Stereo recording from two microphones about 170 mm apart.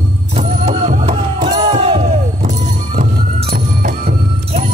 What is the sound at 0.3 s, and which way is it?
Music, 40° right (ahead or behind).